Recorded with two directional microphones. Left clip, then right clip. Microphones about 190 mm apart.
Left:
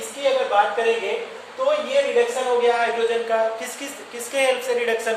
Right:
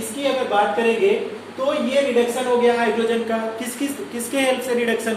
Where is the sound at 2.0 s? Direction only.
Centre (ahead or behind).